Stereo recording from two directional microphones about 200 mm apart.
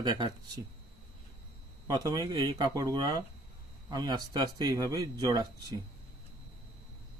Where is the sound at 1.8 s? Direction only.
20° right (ahead or behind).